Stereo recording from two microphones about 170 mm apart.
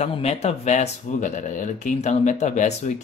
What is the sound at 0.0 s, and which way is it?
Speech, 40° left (ahead or behind).